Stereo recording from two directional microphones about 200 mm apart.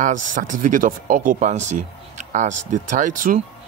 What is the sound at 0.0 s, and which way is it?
Speech, 40° right (ahead or behind).